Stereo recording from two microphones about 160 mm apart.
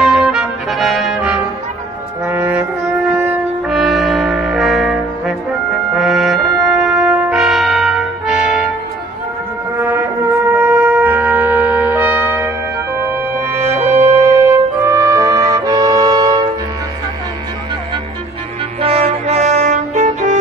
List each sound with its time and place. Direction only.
0.0 s brass instrument: centre (ahead or behind)
2.2 s brass instrument: 10° right (ahead or behind)
3.7 s trombone: centre (ahead or behind)
5.9 s brass instrument: centre (ahead or behind)
9.8 s music: 10° right (ahead or behind)
10.5 s trumpet: 15° right (ahead or behind)
13.5 s music: 15° right (ahead or behind)
13.8 s brass instrument: 15° right (ahead or behind)
18.8 s music: 40° right (ahead or behind)